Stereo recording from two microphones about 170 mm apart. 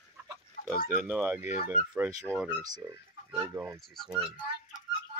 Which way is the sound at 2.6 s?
25° right (ahead or behind).